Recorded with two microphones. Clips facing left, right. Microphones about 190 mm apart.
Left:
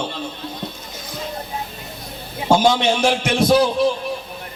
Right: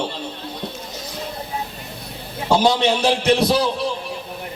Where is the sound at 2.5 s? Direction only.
35° right (ahead or behind).